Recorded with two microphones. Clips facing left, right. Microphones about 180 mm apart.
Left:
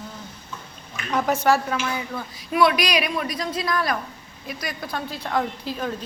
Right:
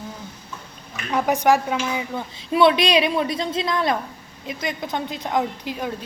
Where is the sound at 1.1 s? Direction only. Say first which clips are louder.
Right 2 dB; 15° right (ahead or behind).